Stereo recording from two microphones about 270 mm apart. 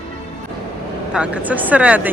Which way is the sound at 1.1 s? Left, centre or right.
Centre.